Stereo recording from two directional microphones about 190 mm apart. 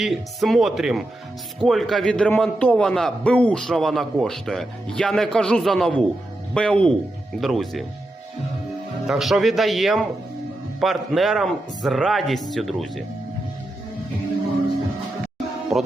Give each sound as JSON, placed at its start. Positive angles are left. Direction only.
{"t": 0.0, "sound": "a man's voice", "side_deg": 0}
{"t": 9.0, "sound": "a man's voice", "side_deg": 0}
{"t": 15.7, "sound": "speech", "side_deg": -15}